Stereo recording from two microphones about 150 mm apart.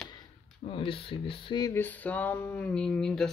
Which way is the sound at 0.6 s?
40° left (ahead or behind).